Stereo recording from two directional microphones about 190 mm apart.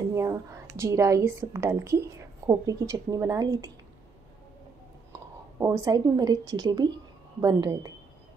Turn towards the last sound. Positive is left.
turn(degrees=-20)  # may be behind; listen again after turning